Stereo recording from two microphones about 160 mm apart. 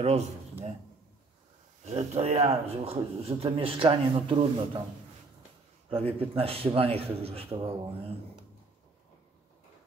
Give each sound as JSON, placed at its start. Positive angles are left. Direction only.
{"t": 0.0, "sound": "speech", "side_deg": -40}
{"t": 1.9, "sound": "speech", "side_deg": -40}
{"t": 5.9, "sound": "speech", "side_deg": -35}